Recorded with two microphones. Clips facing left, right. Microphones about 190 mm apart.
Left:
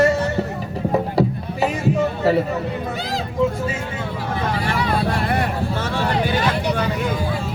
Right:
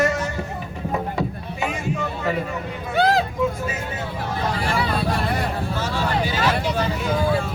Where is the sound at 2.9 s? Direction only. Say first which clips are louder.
Right 7 dB; 65° right (ahead or behind).